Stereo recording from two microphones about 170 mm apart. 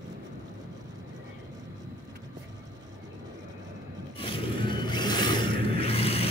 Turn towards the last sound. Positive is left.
turn(degrees=35)  # may be behind; listen again after turning